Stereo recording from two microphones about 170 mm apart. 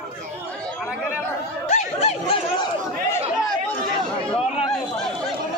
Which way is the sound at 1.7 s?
40° left (ahead or behind).